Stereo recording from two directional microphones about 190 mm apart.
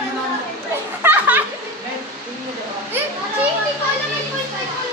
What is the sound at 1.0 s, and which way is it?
Speech, 10° right (ahead or behind).